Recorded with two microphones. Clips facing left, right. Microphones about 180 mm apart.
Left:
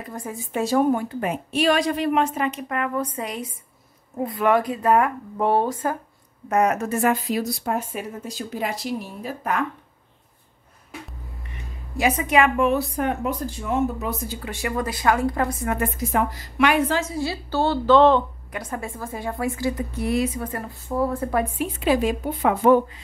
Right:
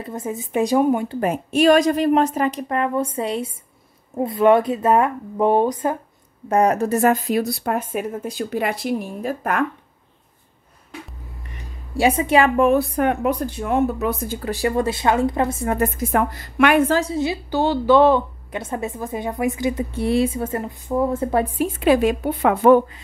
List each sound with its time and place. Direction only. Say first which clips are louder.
0.0 s a woman's voice: right 5 dB; 20° right (ahead or behind)
1.0 s a woman's voice: right 4 dB; 45° right (ahead or behind); by 5.9 s 20° right (ahead or behind)
6.5 s speech: right 3 dB; 35° right (ahead or behind); by 9.7 s 50° right (ahead or behind)
12.0 s a woman's voice: right 3 dB; 30° right (ahead or behind)
15.8 s speech: right 4 dB; 50° right (ahead or behind)
17.0 s a woman's voice: right 4 dB; 20° right (ahead or behind)
18.5 s a woman's voice: right 6 dB; 25° right (ahead or behind)
21.5 s a woman's voice: right 6 dB; 55° right (ahead or behind)